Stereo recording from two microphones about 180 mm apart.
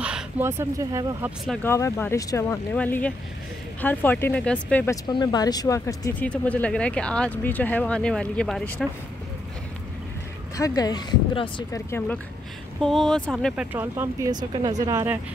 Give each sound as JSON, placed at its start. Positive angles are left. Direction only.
{"t": 0.0, "sound": "speech", "side_deg": -10}
{"t": 1.6, "sound": "speech", "side_deg": 15}
{"t": 5.0, "sound": "speech", "side_deg": 25}
{"t": 10.6, "sound": "speech", "side_deg": 20}
{"t": 12.8, "sound": "speech", "side_deg": 0}